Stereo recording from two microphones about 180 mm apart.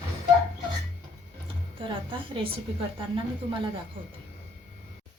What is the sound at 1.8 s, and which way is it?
A woman's voice, 30° right (ahead or behind).